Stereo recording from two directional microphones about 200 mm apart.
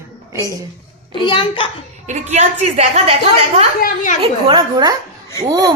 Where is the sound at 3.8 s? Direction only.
40° left (ahead or behind).